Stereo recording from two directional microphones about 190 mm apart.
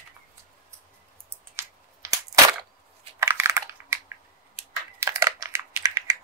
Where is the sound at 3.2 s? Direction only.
15° right (ahead or behind).